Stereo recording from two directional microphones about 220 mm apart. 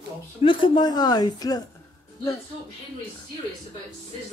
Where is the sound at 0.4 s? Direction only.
20° left (ahead or behind).